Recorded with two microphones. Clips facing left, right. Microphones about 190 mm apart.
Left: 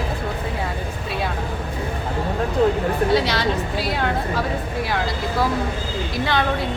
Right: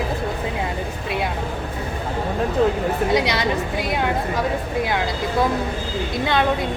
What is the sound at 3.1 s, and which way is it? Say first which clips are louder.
Speech: even; 15° right (ahead or behind).